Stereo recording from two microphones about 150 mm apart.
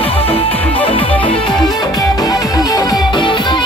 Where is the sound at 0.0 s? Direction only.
40° left (ahead or behind).